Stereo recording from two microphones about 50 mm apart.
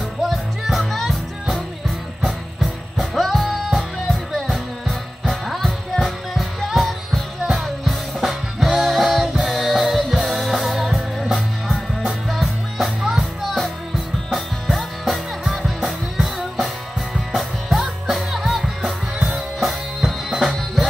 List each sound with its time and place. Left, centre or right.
0.2 s music: centre
14.7 s music: centre
19.1 s music: centre